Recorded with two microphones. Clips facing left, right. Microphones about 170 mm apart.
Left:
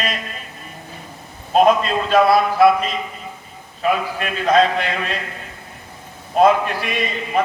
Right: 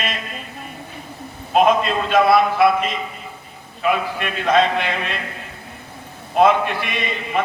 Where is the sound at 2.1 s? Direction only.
35° left (ahead or behind).